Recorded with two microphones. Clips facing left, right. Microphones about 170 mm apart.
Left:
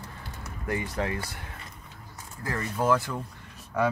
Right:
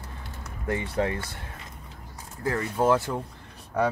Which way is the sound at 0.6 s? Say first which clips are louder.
Right 3 dB; 25° right (ahead or behind).